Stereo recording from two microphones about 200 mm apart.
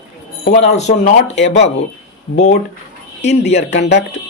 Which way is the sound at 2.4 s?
35° left (ahead or behind).